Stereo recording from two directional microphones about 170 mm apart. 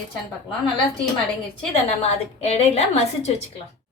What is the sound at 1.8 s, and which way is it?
A woman's voice, 35° left (ahead or behind).